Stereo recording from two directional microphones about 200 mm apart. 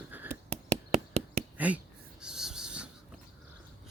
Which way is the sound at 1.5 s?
5° right (ahead or behind).